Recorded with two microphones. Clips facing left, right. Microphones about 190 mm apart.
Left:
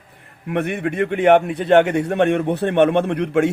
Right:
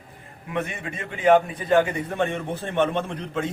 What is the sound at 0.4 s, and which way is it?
A man's voice, 65° left (ahead or behind).